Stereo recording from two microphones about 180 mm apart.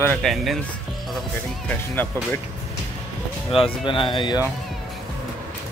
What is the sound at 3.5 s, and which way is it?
Speech, 30° left (ahead or behind).